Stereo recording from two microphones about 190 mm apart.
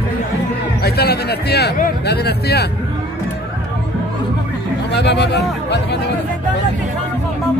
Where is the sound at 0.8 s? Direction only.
55° left (ahead or behind).